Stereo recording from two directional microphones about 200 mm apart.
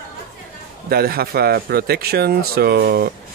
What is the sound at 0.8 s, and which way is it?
Speech, 50° right (ahead or behind).